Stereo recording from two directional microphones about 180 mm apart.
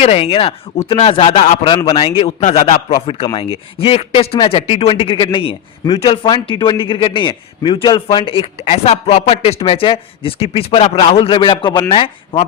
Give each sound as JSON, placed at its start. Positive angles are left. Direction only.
{"t": 0.0, "sound": "a man's voice", "side_deg": 35}